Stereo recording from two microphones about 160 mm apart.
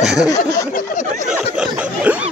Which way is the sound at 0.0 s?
5° right (ahead or behind).